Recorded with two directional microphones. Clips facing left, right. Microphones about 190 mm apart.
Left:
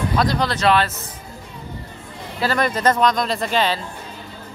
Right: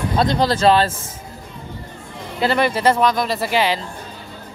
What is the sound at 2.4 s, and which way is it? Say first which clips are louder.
Speech: right 2 dB; 10° right (ahead or behind).